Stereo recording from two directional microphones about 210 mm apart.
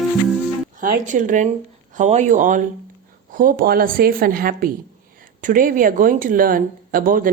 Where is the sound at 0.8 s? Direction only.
40° right (ahead or behind).